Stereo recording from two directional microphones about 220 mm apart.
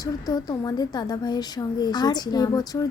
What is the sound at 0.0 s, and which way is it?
A woman's voice, 15° left (ahead or behind).